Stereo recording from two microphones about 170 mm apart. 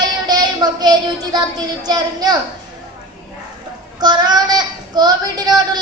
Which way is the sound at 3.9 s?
25° right (ahead or behind).